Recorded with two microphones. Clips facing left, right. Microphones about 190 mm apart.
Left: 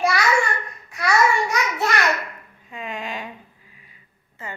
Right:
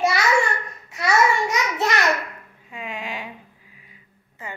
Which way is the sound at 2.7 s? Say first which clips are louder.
Left 1 dB; 10° right (ahead or behind).